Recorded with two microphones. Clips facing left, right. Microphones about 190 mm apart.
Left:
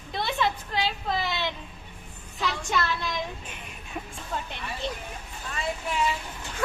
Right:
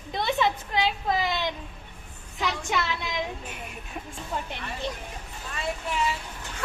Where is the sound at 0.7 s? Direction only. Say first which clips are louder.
Right 3 dB; 15° right (ahead or behind).